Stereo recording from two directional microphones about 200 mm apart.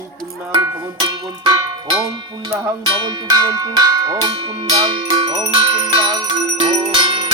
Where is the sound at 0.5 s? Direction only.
15° right (ahead or behind).